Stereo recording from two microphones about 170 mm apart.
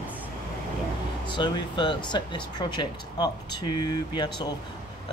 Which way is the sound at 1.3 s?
30° left (ahead or behind).